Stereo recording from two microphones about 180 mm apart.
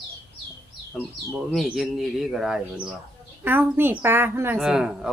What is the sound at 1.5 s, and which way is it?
Speech, centre (ahead or behind).